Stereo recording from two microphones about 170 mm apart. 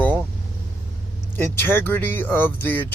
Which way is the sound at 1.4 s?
15° left (ahead or behind).